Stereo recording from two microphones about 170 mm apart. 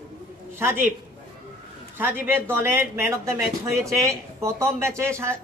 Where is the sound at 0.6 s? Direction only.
15° right (ahead or behind).